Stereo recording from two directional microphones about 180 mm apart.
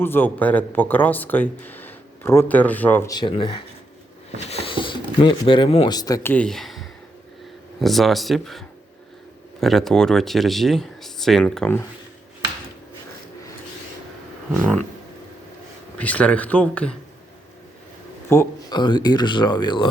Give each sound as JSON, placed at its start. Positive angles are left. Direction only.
{"t": 0.0, "sound": "speech", "side_deg": 10}
{"t": 3.2, "sound": "speech", "side_deg": 30}
{"t": 6.3, "sound": "speech", "side_deg": 5}
{"t": 14.5, "sound": "speech", "side_deg": 5}
{"t": 16.0, "sound": "speech", "side_deg": 5}
{"t": 18.3, "sound": "a sound", "side_deg": 15}
{"t": 18.8, "sound": "speech", "side_deg": 25}